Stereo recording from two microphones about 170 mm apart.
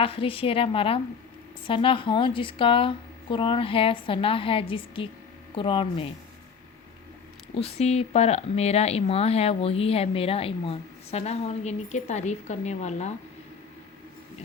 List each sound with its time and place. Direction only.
0.0 s speech: 30° left (ahead or behind)
7.5 s speech: 35° left (ahead or behind)